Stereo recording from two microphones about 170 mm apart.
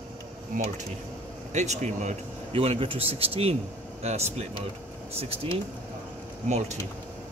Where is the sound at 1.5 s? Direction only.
45° right (ahead or behind).